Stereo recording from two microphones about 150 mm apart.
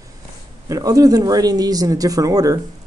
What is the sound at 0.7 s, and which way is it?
Speech, 25° right (ahead or behind).